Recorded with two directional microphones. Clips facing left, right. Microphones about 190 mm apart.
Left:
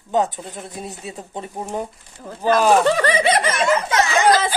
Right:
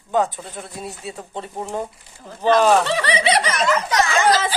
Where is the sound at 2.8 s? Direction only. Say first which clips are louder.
Left 3 dB; 45° left (ahead or behind).